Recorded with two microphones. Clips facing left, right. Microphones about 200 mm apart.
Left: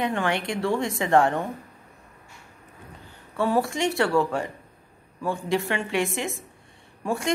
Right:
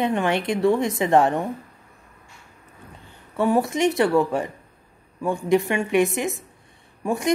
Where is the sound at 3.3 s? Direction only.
15° right (ahead or behind).